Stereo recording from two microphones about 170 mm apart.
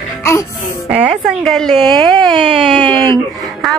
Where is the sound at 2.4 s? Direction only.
30° right (ahead or behind).